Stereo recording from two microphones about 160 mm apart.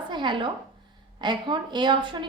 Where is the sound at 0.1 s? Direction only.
30° right (ahead or behind).